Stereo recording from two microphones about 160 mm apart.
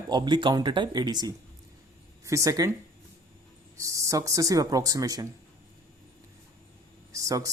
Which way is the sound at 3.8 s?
20° right (ahead or behind).